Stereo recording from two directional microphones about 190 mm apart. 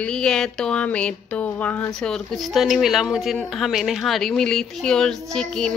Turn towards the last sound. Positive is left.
turn(degrees=5)  # may be behind; listen again after turning